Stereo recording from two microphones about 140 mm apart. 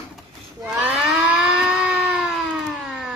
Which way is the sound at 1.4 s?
5° right (ahead or behind).